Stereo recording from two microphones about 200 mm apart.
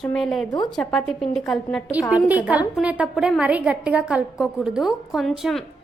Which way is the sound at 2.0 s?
20° left (ahead or behind).